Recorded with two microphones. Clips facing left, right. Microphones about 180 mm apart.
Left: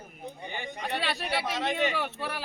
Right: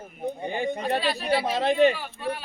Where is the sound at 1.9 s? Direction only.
65° left (ahead or behind).